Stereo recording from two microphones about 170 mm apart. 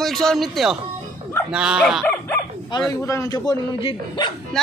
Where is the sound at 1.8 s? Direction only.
10° left (ahead or behind).